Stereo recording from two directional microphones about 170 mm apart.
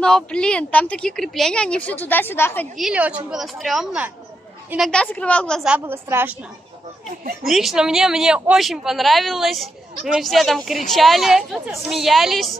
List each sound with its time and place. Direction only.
0.0 s a woman's voice: 5° left (ahead or behind)
2.8 s a woman's voice: 5° right (ahead or behind)
5.6 s a woman's voice: 10° right (ahead or behind)
7.4 s speech: centre (ahead or behind)